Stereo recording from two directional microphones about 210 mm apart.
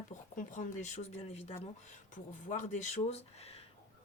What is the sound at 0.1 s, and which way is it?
Speech, 35° left (ahead or behind).